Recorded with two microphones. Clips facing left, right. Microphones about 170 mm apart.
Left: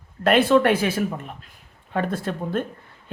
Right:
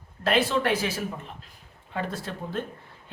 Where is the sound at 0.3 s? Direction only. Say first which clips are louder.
Left 7 dB; 55° left (ahead or behind).